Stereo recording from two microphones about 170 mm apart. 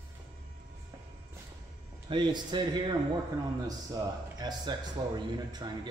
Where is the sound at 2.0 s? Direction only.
25° right (ahead or behind).